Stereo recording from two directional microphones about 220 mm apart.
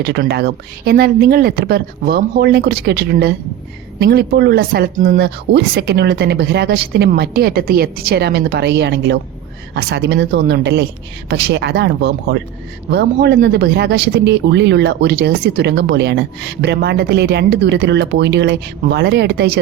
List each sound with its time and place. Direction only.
0.0 s speech: 50° right (ahead or behind)